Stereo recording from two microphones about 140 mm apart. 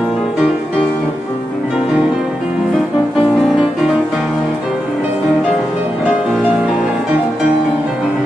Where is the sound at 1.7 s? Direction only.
5° right (ahead or behind).